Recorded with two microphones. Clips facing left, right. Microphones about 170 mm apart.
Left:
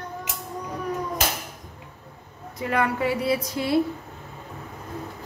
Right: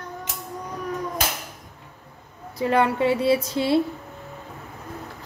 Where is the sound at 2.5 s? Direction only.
30° right (ahead or behind).